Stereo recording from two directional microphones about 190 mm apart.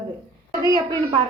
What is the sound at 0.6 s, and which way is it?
Speech, 20° right (ahead or behind).